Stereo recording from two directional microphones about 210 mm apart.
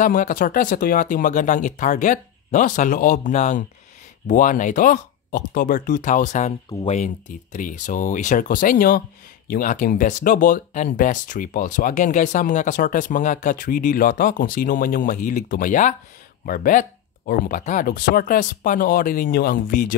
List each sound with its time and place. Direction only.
0.0 s speech: 40° left (ahead or behind)